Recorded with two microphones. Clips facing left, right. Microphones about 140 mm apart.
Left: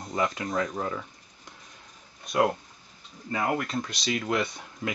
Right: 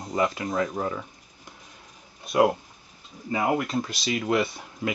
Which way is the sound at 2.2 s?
5° right (ahead or behind).